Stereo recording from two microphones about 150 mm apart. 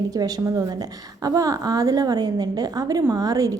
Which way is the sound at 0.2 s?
25° right (ahead or behind).